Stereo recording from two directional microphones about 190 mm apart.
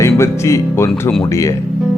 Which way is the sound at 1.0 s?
5° left (ahead or behind).